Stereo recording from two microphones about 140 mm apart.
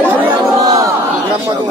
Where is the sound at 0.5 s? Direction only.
25° right (ahead or behind).